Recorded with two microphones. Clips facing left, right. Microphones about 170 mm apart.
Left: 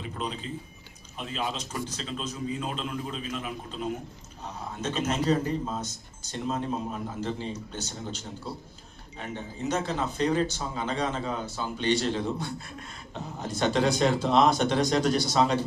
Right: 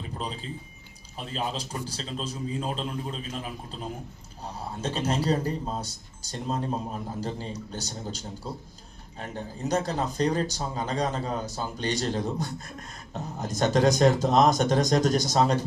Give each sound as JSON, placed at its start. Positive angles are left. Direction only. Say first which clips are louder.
{"t": 0.0, "sound": "speech", "louder": "left 1 dB", "side_deg": -35}
{"t": 4.8, "sound": "speech", "louder": "even", "side_deg": -35}